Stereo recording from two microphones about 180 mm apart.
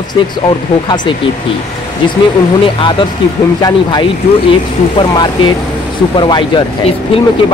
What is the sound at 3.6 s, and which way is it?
Speech, 20° left (ahead or behind).